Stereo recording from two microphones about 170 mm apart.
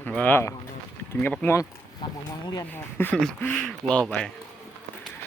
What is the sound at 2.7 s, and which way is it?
Speech, 10° left (ahead or behind).